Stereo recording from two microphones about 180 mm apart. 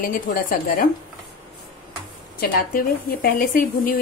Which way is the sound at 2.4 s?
55° left (ahead or behind).